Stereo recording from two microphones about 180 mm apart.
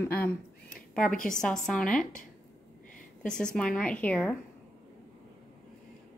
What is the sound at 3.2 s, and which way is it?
Speech, 5° left (ahead or behind).